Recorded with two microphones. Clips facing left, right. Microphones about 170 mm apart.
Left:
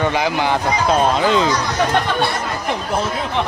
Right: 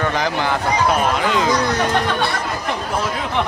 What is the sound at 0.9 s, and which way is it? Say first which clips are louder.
Speech: left 6 dB; 30° left (ahead or behind).